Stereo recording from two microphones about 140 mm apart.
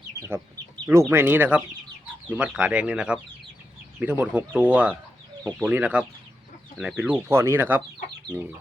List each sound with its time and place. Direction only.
0.2 s speech: 20° right (ahead or behind)
5.4 s speech: 10° left (ahead or behind)
5.7 s speech: 10° right (ahead or behind)
7.3 s speech: 15° right (ahead or behind)